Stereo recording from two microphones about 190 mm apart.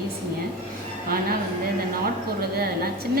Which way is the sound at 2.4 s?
55° right (ahead or behind).